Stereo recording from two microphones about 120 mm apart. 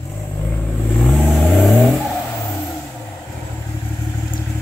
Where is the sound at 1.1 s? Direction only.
Centre (ahead or behind).